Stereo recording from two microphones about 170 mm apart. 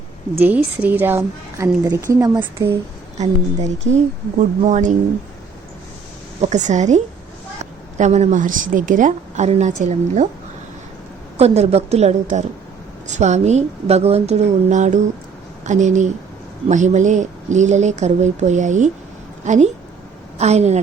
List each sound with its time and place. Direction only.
0.3 s a woman's voice: 10° right (ahead or behind)
3.9 s a woman's voice: 40° right (ahead or behind)
6.4 s a woman's voice: 45° right (ahead or behind)
11.3 s a woman's voice: 40° right (ahead or behind)